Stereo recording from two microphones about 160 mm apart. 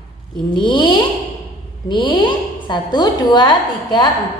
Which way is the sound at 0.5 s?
30° left (ahead or behind).